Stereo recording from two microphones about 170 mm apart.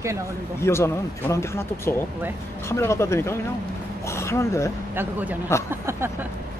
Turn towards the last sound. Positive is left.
turn(degrees=-15)  # may be behind; listen again after turning